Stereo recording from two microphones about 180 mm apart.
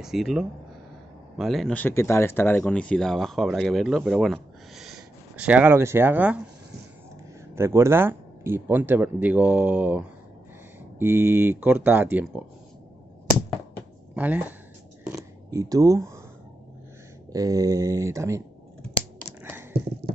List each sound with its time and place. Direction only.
0.0 s speech: centre (ahead or behind)
7.5 s speech: 15° right (ahead or behind)
14.1 s speech: 10° right (ahead or behind)
15.1 s a sound: 20° right (ahead or behind)
17.3 s speech: 20° right (ahead or behind)